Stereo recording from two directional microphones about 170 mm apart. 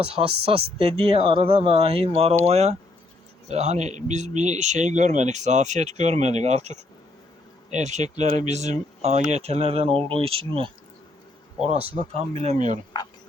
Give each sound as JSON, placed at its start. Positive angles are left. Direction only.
{"t": 0.0, "sound": "speech", "side_deg": -35}